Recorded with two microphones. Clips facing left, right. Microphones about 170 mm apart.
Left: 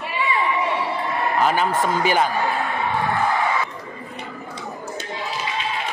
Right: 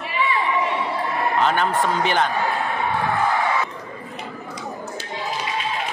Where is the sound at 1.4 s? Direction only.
5° left (ahead or behind).